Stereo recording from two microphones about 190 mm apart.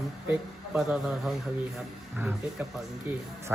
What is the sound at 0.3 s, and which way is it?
Speech, 5° right (ahead or behind).